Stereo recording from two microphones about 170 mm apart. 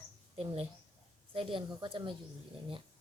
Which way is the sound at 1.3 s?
30° right (ahead or behind).